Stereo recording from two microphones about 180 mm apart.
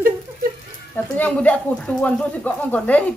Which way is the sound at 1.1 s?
5° left (ahead or behind).